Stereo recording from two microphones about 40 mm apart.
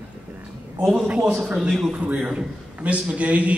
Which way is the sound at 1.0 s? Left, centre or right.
Right.